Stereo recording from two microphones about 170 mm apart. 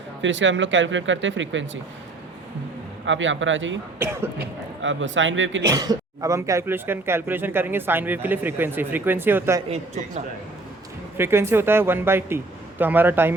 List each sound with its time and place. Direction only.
0.2 s speech: 90° right
3.1 s speech: 90° right
3.9 s speech: 15° right (ahead or behind)
4.4 s speech: 90° right
5.6 s speech: 20° right (ahead or behind)
9.6 s a man's voice: 40° right (ahead or behind)
11.2 s speech: 15° right (ahead or behind)